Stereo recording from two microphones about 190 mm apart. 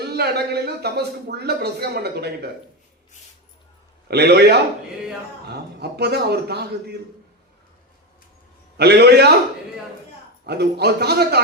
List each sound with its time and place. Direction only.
0.0 s speech: 60° right (ahead or behind)
4.1 s speech: 60° right (ahead or behind)
8.8 s speech: 60° right (ahead or behind)
10.4 s speech: 60° right (ahead or behind)